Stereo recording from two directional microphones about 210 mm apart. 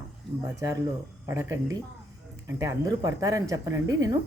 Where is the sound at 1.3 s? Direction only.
15° right (ahead or behind).